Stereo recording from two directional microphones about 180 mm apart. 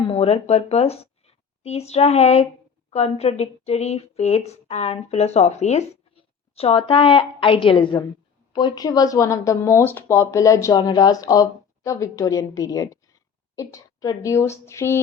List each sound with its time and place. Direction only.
0.0 s a woman's voice: 30° left (ahead or behind); by 15.0 s 15° left (ahead or behind)